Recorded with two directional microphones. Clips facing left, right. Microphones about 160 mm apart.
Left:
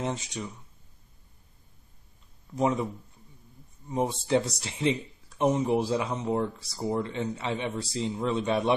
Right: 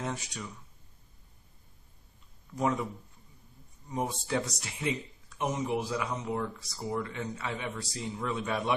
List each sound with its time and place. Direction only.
0.0 s speech: 25° left (ahead or behind)
2.5 s speech: 20° left (ahead or behind)
3.9 s speech: 25° left (ahead or behind)